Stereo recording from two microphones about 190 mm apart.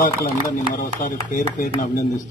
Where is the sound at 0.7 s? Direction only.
45° left (ahead or behind).